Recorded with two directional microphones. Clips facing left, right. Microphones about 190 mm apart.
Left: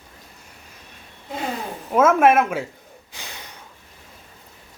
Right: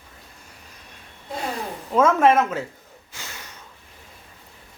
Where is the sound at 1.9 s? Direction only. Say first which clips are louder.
Left 1 dB; 10° left (ahead or behind).